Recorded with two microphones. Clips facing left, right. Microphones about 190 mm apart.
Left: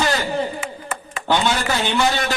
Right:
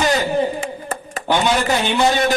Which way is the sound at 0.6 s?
40° right (ahead or behind).